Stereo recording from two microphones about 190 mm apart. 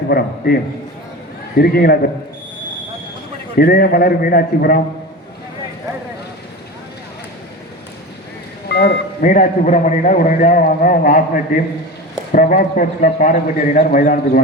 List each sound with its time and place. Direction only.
0.1 s a man's voice: 55° left (ahead or behind)
3.6 s a man's voice: 55° left (ahead or behind)
8.7 s speech: 60° left (ahead or behind)
9.3 s a man's voice: 40° left (ahead or behind)